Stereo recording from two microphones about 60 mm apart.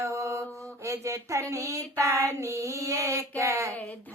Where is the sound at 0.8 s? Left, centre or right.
Right.